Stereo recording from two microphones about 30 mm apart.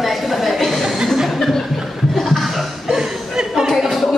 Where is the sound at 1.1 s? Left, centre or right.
Centre.